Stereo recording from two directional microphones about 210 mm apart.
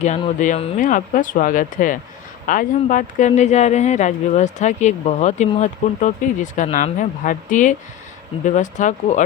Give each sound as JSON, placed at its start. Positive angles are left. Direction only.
{"t": 0.0, "sound": "speech", "side_deg": 35}